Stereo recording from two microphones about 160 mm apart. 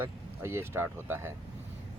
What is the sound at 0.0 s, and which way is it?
Speech, 15° right (ahead or behind).